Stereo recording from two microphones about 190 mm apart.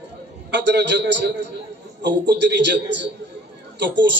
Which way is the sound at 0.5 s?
65° right (ahead or behind).